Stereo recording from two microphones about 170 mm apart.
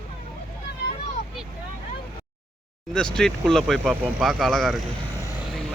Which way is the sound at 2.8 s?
5° left (ahead or behind).